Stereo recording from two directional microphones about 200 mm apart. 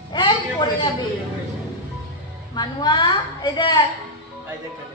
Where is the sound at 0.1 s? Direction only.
20° left (ahead or behind).